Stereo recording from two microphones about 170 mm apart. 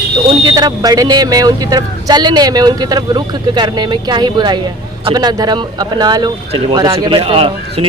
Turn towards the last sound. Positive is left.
turn(degrees=-35)  # may be behind; listen again after turning